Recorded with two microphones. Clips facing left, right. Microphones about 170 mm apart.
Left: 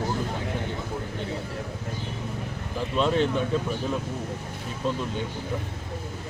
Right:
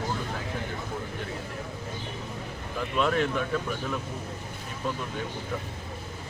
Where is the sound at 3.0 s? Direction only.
25° left (ahead or behind).